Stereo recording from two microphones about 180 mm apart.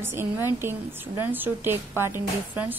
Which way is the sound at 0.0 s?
15° right (ahead or behind).